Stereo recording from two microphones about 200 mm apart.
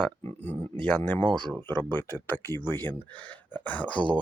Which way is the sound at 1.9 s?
10° left (ahead or behind).